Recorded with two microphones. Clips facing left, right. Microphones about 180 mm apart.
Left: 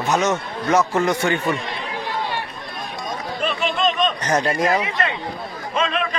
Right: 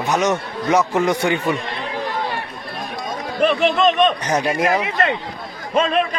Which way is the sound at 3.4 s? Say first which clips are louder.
Right 7 dB; 55° right (ahead or behind).